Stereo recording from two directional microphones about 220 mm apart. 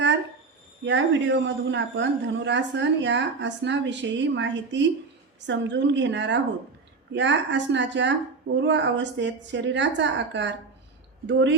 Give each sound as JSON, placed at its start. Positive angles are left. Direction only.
{"t": 0.9, "sound": "a woman's voice", "side_deg": -55}